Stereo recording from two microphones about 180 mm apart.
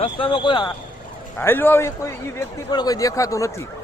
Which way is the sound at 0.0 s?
30° left (ahead or behind).